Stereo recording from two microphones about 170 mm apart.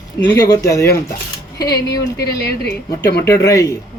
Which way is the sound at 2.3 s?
75° left (ahead or behind).